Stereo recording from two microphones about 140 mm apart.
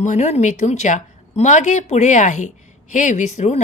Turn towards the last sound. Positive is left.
turn(degrees=55)  # may be behind; listen again after turning